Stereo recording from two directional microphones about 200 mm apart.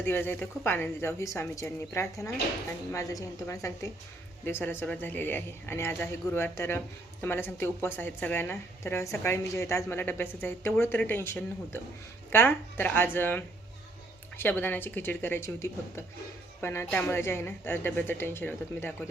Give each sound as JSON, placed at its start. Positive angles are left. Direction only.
{"t": 0.0, "sound": "speech", "side_deg": 10}